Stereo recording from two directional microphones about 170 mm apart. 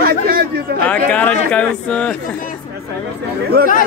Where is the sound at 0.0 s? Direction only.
65° right (ahead or behind).